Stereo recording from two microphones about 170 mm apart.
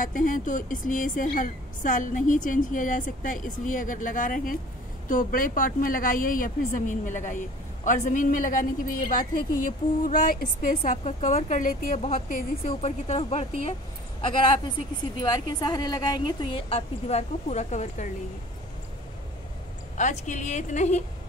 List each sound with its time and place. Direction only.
0.0 s a woman's voice: 50° left (ahead or behind)
10.8 s a woman's voice: 35° left (ahead or behind)
20.0 s a woman's voice: 45° left (ahead or behind)